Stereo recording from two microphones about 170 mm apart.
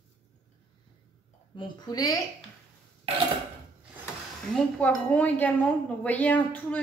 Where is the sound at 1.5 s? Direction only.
30° left (ahead or behind).